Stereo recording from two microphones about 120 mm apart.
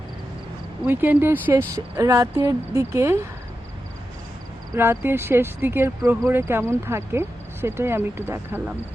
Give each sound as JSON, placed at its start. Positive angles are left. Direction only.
{"t": 0.9, "sound": "speech", "side_deg": -15}
{"t": 1.7, "sound": "speech", "side_deg": -30}
{"t": 4.7, "sound": "speech", "side_deg": -20}